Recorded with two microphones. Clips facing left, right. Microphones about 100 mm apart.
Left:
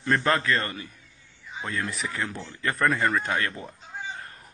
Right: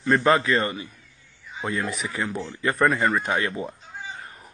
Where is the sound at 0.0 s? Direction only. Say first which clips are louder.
Right 4 dB; 5° right (ahead or behind).